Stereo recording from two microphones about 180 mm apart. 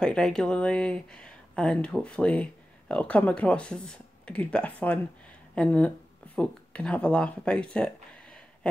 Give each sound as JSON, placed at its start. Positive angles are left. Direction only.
{"t": 0.0, "sound": "speech", "side_deg": 5}